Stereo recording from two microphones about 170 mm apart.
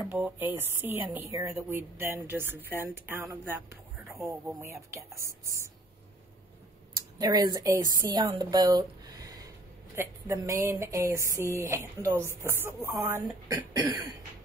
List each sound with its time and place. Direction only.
0.1 s speech: 10° right (ahead or behind)
7.2 s speech: 25° right (ahead or behind)